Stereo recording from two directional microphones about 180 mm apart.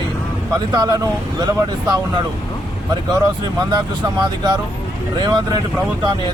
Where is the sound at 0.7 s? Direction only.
20° right (ahead or behind).